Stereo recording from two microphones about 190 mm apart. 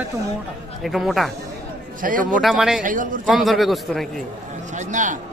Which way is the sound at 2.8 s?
45° right (ahead or behind).